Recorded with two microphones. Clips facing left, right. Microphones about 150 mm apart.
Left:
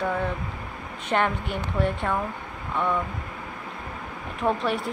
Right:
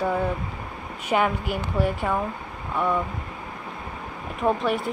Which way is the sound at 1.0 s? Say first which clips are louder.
Right 2 dB; 5° right (ahead or behind).